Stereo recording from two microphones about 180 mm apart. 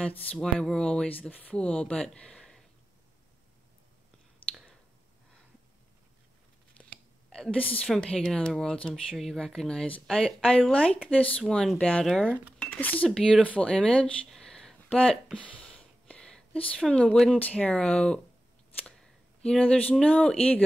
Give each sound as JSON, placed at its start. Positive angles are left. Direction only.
{"t": 0.3, "sound": "a woman's voice", "side_deg": 5}
{"t": 6.8, "sound": "a woman's voice", "side_deg": 0}